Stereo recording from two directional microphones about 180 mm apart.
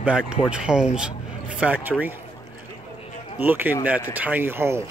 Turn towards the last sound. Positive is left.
turn(degrees=-15)  # may be behind; listen again after turning